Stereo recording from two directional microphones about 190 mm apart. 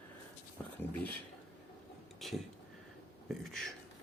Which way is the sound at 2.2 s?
Centre (ahead or behind).